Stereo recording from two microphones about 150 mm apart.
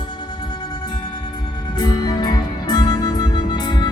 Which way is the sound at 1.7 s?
30° left (ahead or behind).